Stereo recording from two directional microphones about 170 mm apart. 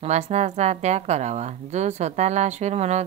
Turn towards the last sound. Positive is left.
turn(degrees=-40)  # may be behind; listen again after turning